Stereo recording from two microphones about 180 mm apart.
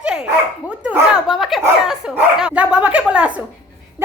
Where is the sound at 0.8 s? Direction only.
5° right (ahead or behind).